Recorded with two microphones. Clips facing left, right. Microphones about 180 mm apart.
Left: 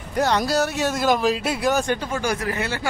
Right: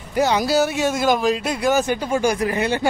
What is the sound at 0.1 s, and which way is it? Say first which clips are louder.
Speech: right 3 dB; 5° right (ahead or behind).